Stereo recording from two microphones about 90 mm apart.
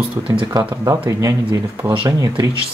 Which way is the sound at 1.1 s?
40° right (ahead or behind).